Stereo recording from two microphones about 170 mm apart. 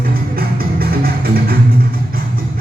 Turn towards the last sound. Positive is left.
turn(degrees=-60)  # may be behind; listen again after turning